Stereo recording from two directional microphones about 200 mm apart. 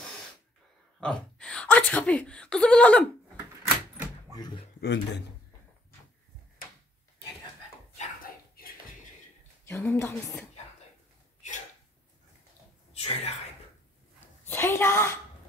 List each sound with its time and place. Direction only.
0.0 s a sound: 5° left (ahead or behind)
1.0 s speech: 5° left (ahead or behind)
4.4 s speech: 20° left (ahead or behind)
4.7 s speech: 60° left (ahead or behind)
8.0 s a sound: 45° left (ahead or behind)
9.7 s a woman's voice: 10° left (ahead or behind)
11.4 s a sound: 35° left (ahead or behind)
12.9 s speech: 30° left (ahead or behind)
14.4 s a woman's voice: 10° left (ahead or behind)